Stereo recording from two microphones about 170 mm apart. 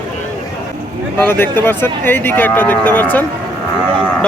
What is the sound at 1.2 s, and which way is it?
Speech, 15° left (ahead or behind).